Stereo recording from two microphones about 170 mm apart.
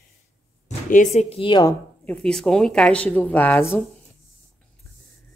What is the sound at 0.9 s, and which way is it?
Speech, 45° left (ahead or behind).